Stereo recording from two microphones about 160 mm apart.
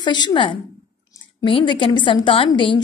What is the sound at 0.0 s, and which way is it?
A woman's voice, 30° left (ahead or behind).